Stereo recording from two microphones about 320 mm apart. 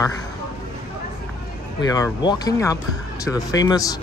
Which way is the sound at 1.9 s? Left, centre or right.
Centre.